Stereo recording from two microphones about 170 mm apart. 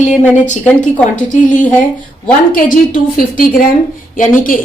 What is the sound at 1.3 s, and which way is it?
A woman's voice, 50° left (ahead or behind).